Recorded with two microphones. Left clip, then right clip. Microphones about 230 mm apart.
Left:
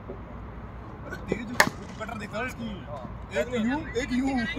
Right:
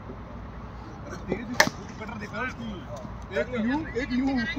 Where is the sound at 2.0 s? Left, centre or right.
Left.